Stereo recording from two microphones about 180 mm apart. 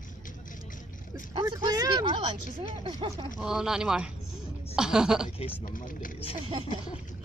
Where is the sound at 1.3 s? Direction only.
25° right (ahead or behind).